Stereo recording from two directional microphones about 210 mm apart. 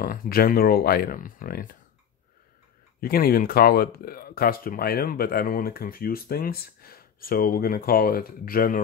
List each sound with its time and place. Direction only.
0.0 s speech: 40° left (ahead or behind)
3.0 s speech: 45° left (ahead or behind)